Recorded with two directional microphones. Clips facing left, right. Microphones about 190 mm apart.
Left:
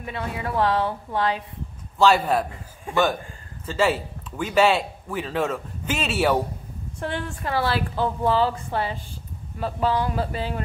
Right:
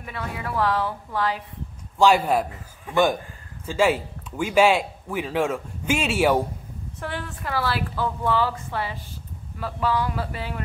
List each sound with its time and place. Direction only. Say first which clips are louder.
0.0 s a woman's voice: left 2 dB; 25° left (ahead or behind)
2.0 s speech: even; 10° right (ahead or behind)
7.0 s a woman's voice: left 3 dB; 25° left (ahead or behind)